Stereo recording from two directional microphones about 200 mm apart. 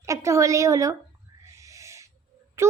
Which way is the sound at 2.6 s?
15° right (ahead or behind).